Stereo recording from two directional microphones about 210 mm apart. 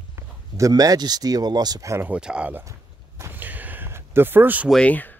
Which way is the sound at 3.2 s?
10° right (ahead or behind).